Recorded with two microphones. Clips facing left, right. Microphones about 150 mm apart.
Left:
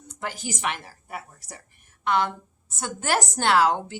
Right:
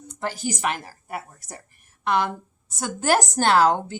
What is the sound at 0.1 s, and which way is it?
Speech, 35° right (ahead or behind).